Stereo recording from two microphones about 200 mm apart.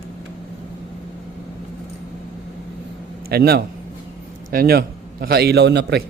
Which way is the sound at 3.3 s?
50° right (ahead or behind).